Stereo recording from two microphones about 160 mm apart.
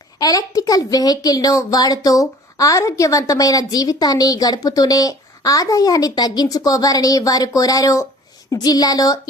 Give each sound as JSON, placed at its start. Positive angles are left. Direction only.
{"t": 0.2, "sound": "speech", "side_deg": 25}